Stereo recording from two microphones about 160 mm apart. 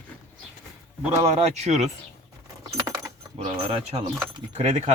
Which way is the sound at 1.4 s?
45° right (ahead or behind).